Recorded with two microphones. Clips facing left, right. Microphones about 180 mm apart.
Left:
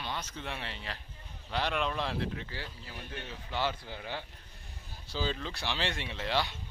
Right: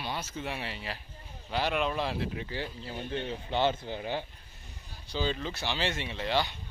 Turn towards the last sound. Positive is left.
turn(degrees=0)  # may be behind; listen again after turning